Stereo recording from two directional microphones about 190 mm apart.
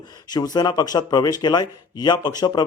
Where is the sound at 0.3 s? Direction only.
20° left (ahead or behind).